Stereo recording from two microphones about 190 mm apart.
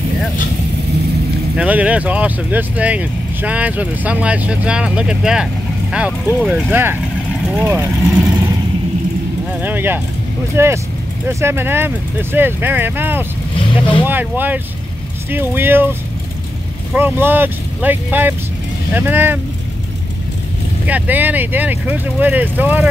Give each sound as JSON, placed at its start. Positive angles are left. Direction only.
{"t": 1.6, "sound": "speech", "side_deg": -5}
{"t": 9.5, "sound": "a sound", "side_deg": -10}
{"t": 10.5, "sound": "speech", "side_deg": -15}
{"t": 13.6, "sound": "speech", "side_deg": 25}
{"t": 14.0, "sound": "speech", "side_deg": -10}
{"t": 20.8, "sound": "speech", "side_deg": -10}